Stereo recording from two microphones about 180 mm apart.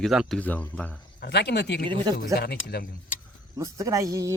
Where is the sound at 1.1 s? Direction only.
65° left (ahead or behind).